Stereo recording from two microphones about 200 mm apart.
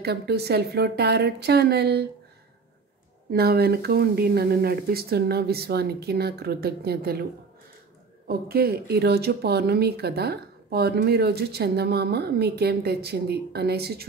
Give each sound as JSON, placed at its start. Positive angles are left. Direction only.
{"t": 0.0, "sound": "a woman's voice", "side_deg": -55}
{"t": 3.3, "sound": "speech", "side_deg": -50}
{"t": 8.3, "sound": "speech", "side_deg": -50}